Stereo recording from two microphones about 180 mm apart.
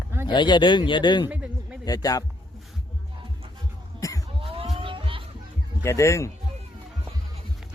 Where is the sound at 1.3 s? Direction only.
5° right (ahead or behind).